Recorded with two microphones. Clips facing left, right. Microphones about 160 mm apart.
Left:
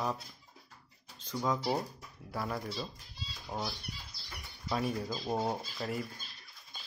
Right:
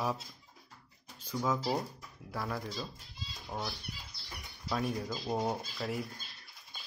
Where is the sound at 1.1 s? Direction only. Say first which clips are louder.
Even; 10° right (ahead or behind).